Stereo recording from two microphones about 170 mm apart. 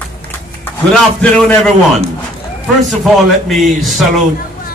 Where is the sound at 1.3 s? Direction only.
5° left (ahead or behind).